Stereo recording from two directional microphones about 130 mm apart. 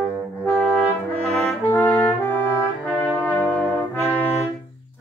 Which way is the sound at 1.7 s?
20° left (ahead or behind).